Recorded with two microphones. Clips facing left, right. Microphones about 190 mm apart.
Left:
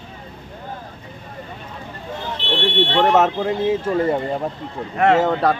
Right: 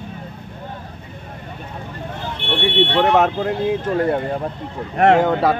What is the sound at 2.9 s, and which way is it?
Speech, centre (ahead or behind).